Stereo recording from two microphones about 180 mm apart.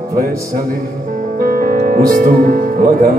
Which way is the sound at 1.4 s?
50° right (ahead or behind).